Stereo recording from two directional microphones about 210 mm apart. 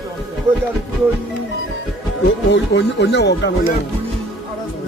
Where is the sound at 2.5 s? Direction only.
55° left (ahead or behind).